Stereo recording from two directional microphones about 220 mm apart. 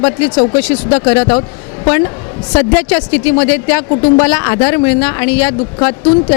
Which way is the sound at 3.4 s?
15° left (ahead or behind).